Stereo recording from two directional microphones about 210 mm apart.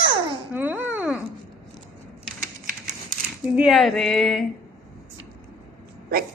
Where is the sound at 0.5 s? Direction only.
10° right (ahead or behind).